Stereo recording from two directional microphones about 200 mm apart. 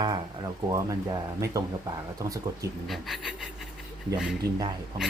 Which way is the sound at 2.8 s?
Centre (ahead or behind).